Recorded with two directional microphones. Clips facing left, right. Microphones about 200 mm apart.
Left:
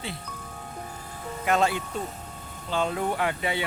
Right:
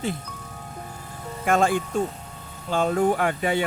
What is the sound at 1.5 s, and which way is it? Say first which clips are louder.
Speech: right 3 dB; 50° right (ahead or behind).